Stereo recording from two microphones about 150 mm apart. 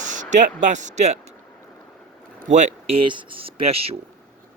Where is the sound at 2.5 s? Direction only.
45° right (ahead or behind).